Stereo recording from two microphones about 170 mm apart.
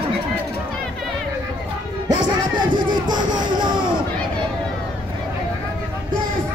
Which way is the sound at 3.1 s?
25° right (ahead or behind).